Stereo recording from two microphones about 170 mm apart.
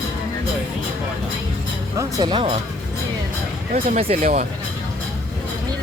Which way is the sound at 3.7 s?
35° right (ahead or behind).